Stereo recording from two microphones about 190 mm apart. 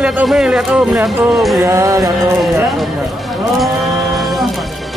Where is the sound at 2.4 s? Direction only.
Centre (ahead or behind).